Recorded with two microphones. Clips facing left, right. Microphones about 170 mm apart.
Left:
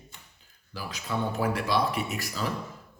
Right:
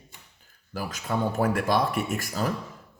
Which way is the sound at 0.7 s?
45° right (ahead or behind).